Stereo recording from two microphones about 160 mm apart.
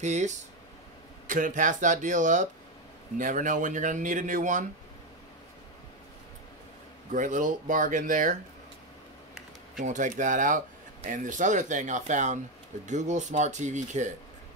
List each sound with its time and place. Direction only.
0.0 s speech: 50° right (ahead or behind)
7.1 s speech: 50° right (ahead or behind)
9.8 s speech: 50° right (ahead or behind)